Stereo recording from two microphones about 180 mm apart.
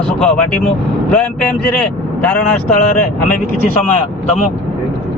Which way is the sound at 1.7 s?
5° left (ahead or behind).